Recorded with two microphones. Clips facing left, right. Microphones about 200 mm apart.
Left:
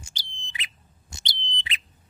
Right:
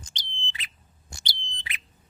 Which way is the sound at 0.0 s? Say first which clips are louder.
Right 2 dB; 10° left (ahead or behind).